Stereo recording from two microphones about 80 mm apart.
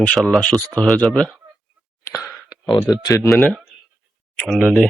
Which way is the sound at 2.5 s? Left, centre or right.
Centre.